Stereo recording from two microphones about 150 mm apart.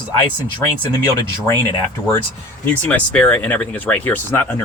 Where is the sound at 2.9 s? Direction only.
10° left (ahead or behind).